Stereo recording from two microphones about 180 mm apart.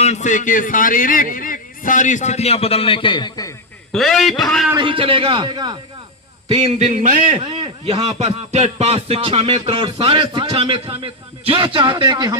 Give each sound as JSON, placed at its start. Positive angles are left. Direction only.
{"t": 0.0, "sound": "a man's voice", "side_deg": 40}
{"t": 3.9, "sound": "a man's voice", "side_deg": 0}
{"t": 4.7, "sound": "a man's voice", "side_deg": -25}
{"t": 6.5, "sound": "a sound", "side_deg": -35}